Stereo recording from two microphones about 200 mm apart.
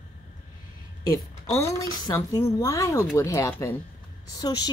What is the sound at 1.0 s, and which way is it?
A woman's voice, 15° left (ahead or behind).